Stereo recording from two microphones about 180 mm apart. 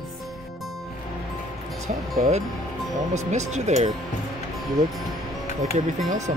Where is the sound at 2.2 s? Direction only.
40° right (ahead or behind).